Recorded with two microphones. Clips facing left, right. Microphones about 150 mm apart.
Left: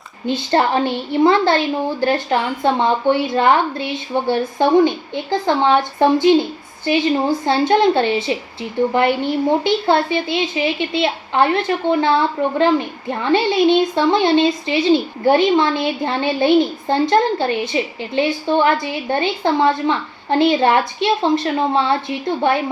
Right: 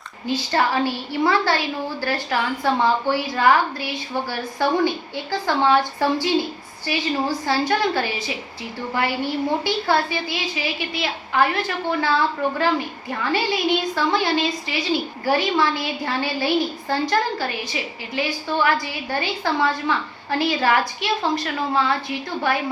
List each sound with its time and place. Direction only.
0.3 s a woman's voice: 25° left (ahead or behind)
9.6 s a woman's voice: 25° left (ahead or behind)